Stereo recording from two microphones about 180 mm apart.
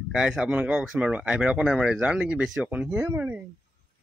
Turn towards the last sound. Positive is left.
turn(degrees=-10)  # may be behind; listen again after turning